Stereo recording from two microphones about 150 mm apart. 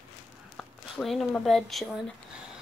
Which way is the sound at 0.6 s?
Centre (ahead or behind).